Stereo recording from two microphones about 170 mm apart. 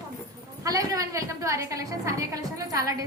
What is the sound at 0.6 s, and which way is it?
A woman's voice, 20° right (ahead or behind).